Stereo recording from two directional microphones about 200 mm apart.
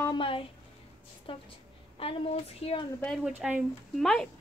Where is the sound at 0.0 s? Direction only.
25° left (ahead or behind).